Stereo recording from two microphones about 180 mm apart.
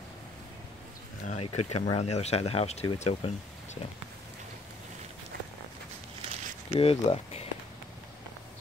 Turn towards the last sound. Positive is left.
turn(degrees=35)  # may be behind; listen again after turning